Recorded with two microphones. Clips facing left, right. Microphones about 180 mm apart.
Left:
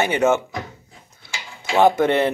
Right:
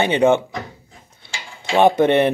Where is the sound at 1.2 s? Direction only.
20° right (ahead or behind).